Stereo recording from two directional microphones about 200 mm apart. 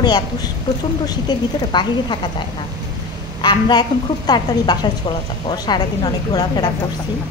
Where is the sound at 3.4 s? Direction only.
20° left (ahead or behind).